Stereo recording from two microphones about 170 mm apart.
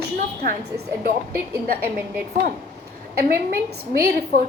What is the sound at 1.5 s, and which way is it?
Speech, 10° right (ahead or behind).